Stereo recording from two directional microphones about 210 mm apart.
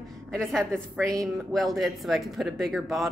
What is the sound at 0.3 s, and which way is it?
Speech, centre (ahead or behind).